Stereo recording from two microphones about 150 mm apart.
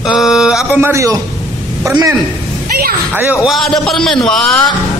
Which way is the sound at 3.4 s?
Centre (ahead or behind).